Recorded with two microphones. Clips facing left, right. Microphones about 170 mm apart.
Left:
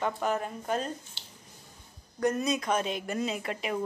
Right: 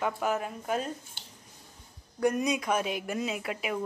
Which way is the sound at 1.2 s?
50° right (ahead or behind).